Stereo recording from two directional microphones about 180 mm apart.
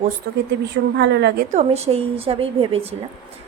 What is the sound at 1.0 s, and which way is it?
Speech, 70° right (ahead or behind).